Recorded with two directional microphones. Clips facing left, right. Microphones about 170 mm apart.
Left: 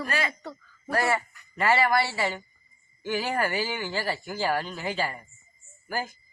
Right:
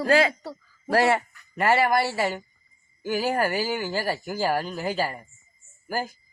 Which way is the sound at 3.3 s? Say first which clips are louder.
Right 3 dB; 45° right (ahead or behind).